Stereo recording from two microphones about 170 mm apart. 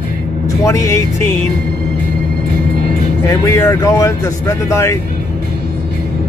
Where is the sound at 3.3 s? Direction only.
20° left (ahead or behind).